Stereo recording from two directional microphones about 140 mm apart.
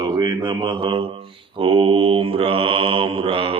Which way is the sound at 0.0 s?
30° right (ahead or behind).